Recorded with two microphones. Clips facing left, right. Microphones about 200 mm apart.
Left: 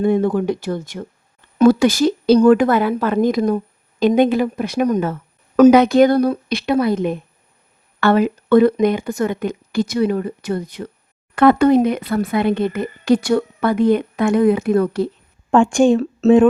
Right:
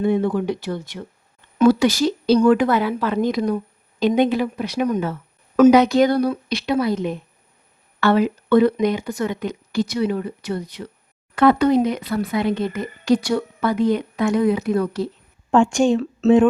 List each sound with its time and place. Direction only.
0.0 s speech: 45° left (ahead or behind)